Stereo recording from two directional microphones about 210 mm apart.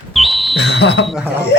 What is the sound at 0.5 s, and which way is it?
Speech, 55° left (ahead or behind).